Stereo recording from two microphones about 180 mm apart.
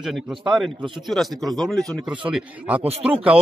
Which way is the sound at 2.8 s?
35° right (ahead or behind).